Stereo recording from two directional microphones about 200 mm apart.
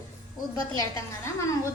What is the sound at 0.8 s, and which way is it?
Speech, 15° left (ahead or behind).